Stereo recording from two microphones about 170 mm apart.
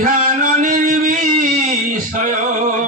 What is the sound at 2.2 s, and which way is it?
Music, 50° right (ahead or behind).